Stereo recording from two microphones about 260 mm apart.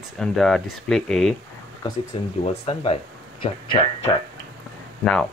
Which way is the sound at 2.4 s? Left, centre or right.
Left.